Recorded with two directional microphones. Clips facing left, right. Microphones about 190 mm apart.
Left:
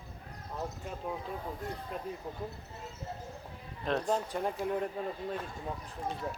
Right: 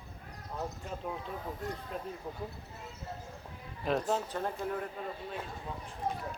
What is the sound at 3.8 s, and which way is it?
Speech, 5° right (ahead or behind).